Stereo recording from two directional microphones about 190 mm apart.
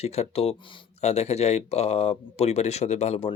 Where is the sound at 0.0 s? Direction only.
35° left (ahead or behind).